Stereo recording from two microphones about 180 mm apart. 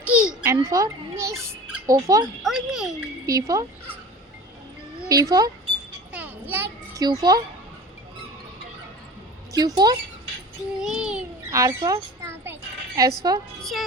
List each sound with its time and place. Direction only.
0.0 s a sound: 5° right (ahead or behind)
0.4 s speech: 20° right (ahead or behind)
2.4 s a child's voice: centre (ahead or behind)
3.2 s speech: 15° right (ahead or behind)
4.9 s speech: 20° right (ahead or behind)
6.1 s a child's voice: 10° right (ahead or behind)
9.5 s speech: 20° right (ahead or behind)
10.8 s a child's voice: 5° right (ahead or behind)
11.5 s a woman's voice: 20° right (ahead or behind)
13.6 s a child's voice: centre (ahead or behind)